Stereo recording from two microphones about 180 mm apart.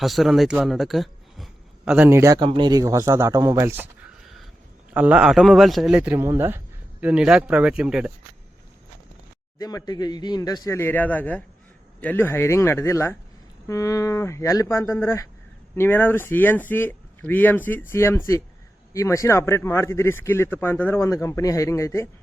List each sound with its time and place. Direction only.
0.0 s a man's voice: centre (ahead or behind)
4.9 s a man's voice: 5° right (ahead or behind)
9.6 s a man's voice: 20° left (ahead or behind)